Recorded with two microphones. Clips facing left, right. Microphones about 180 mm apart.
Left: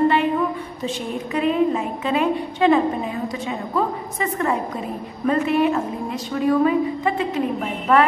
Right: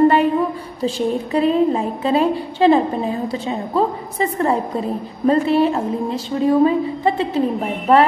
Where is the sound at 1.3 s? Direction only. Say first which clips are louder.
Right 2 dB; 35° right (ahead or behind).